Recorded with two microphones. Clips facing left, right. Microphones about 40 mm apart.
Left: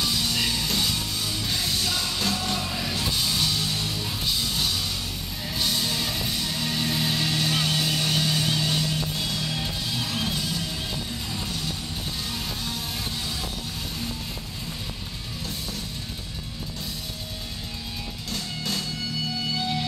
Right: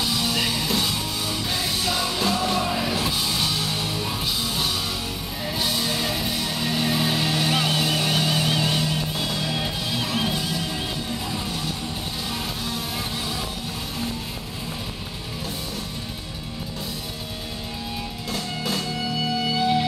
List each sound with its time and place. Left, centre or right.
0.0 s music: centre
18.3 s music: centre